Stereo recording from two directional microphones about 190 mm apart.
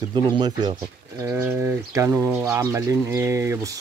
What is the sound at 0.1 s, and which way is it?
Speech, 25° right (ahead or behind).